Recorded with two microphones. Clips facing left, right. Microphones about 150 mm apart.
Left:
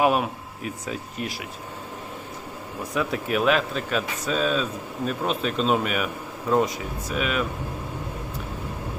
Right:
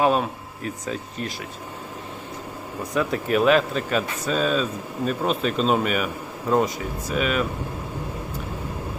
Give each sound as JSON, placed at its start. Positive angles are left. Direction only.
{"t": 0.0, "sound": "speech", "side_deg": 10}
{"t": 2.9, "sound": "speech", "side_deg": 0}